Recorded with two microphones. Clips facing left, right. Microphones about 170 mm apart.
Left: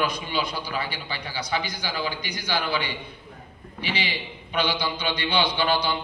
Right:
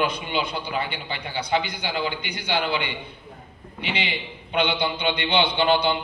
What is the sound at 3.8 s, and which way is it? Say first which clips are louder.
A man's voice: right 1 dB; 25° right (ahead or behind).